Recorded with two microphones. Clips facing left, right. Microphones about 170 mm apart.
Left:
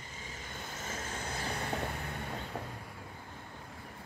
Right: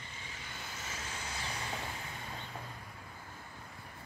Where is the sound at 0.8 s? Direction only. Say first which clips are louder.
Left 5 dB; 50° left (ahead or behind).